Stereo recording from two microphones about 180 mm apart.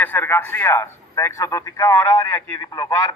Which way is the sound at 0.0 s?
10° left (ahead or behind).